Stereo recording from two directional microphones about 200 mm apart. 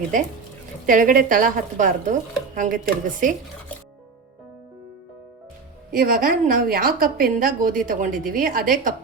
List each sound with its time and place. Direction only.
0.9 s a woman's voice: 40° right (ahead or behind)
5.9 s a woman's voice: 45° right (ahead or behind)